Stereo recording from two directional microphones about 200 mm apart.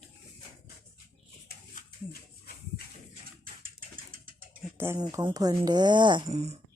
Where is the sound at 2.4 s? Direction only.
50° left (ahead or behind).